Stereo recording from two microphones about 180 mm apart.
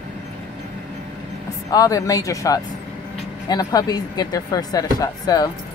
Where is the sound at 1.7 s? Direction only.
20° left (ahead or behind).